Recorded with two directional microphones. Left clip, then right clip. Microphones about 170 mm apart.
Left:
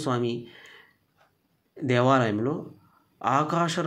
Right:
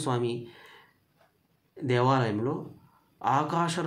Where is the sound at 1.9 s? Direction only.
20° left (ahead or behind).